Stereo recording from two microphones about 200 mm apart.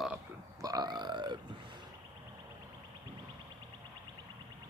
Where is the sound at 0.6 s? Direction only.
20° right (ahead or behind).